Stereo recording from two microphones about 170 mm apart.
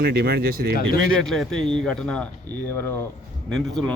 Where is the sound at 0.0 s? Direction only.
65° right (ahead or behind).